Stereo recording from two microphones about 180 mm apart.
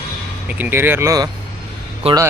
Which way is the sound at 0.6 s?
10° right (ahead or behind).